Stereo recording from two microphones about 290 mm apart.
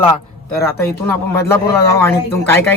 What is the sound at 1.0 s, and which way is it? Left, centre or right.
Speech, centre.